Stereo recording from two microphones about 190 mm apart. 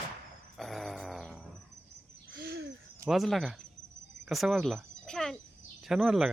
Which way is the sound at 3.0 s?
Centre (ahead or behind).